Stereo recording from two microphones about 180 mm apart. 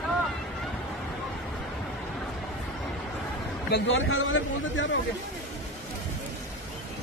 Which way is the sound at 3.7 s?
90° left.